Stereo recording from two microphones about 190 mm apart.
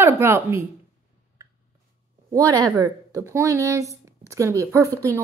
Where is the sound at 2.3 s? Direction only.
20° right (ahead or behind).